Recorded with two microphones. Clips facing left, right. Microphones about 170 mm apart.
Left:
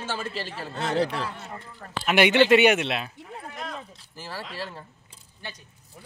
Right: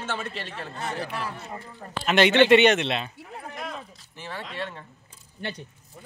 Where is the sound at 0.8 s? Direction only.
90° left.